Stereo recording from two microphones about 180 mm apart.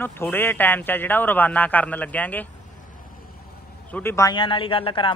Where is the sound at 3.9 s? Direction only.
10° left (ahead or behind).